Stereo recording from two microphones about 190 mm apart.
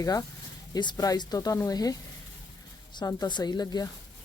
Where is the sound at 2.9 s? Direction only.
20° left (ahead or behind).